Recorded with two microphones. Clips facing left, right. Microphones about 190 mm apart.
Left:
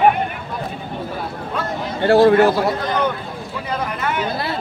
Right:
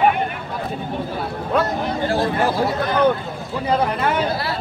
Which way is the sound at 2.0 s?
65° left (ahead or behind).